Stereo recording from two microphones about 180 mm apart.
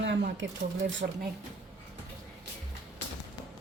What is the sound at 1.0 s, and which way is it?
Speech, 55° right (ahead or behind).